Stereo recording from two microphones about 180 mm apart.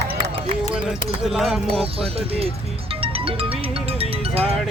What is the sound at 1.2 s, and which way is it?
Speech, centre (ahead or behind).